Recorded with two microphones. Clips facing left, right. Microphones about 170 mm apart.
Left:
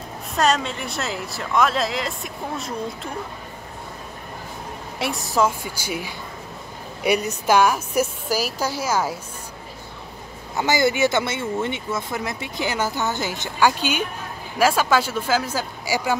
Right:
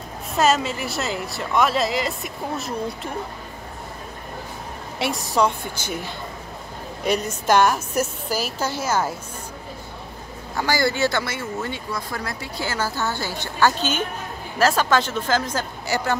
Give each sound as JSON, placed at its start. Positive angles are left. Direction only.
{"t": 0.3, "sound": "speech", "side_deg": -5}
{"t": 4.9, "sound": "a woman's voice", "side_deg": 0}
{"t": 10.5, "sound": "speech", "side_deg": 20}